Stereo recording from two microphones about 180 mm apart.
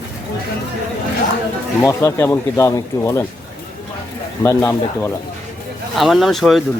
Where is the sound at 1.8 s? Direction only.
15° left (ahead or behind).